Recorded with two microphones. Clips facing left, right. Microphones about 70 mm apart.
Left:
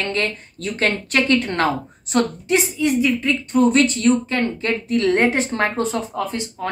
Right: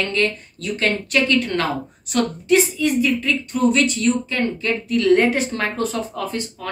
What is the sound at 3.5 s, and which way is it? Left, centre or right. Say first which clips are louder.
A woman's voice: left 3 dB; left.